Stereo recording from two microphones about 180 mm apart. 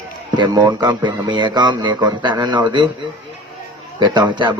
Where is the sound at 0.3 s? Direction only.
25° right (ahead or behind).